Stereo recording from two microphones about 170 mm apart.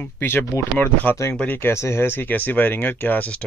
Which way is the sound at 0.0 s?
15° left (ahead or behind).